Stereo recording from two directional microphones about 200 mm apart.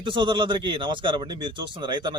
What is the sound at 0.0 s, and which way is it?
A man's voice, 25° right (ahead or behind).